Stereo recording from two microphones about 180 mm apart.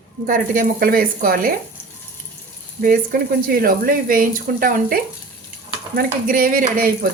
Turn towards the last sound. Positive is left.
turn(degrees=-55)  # may be behind; listen again after turning